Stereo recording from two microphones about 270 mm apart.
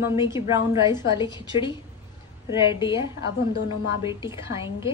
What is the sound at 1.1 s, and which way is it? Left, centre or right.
Speech, centre.